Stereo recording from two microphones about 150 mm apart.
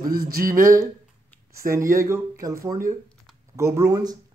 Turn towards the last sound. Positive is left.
turn(degrees=-20)  # may be behind; listen again after turning